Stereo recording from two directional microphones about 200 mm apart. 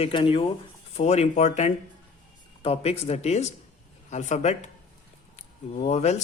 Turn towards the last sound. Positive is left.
turn(degrees=35)  # may be behind; listen again after turning